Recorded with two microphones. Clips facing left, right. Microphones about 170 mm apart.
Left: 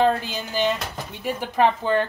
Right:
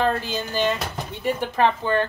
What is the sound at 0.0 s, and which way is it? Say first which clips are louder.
Speech: left 2 dB; 15° left (ahead or behind).